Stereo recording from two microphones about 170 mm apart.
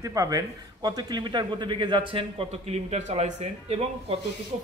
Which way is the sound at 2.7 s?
40° right (ahead or behind).